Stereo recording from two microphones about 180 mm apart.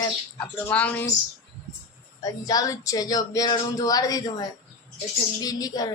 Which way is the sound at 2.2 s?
20° left (ahead or behind).